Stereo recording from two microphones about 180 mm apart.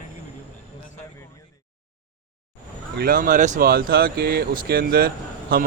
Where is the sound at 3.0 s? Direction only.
50° right (ahead or behind).